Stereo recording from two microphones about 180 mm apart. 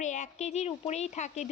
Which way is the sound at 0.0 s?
40° left (ahead or behind).